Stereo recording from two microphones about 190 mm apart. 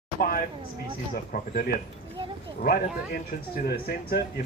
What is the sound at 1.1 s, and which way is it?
Speech, 45° left (ahead or behind).